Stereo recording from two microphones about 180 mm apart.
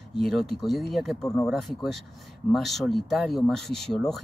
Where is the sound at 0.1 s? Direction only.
Centre (ahead or behind).